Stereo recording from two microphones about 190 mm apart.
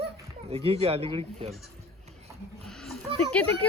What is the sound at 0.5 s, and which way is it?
Speech, 30° right (ahead or behind).